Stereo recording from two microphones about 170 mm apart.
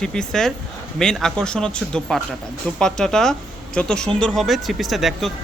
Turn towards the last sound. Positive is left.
turn(degrees=0)  # may be behind; listen again after turning